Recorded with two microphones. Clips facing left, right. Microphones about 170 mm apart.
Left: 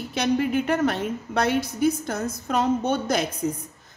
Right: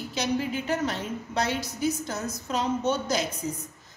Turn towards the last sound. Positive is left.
turn(degrees=55)  # may be behind; listen again after turning